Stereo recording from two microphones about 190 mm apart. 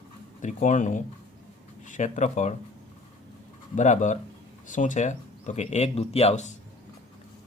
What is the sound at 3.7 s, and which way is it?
Speech, 40° left (ahead or behind).